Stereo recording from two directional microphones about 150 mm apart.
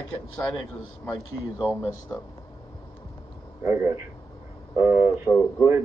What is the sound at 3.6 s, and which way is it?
Speech, 20° right (ahead or behind).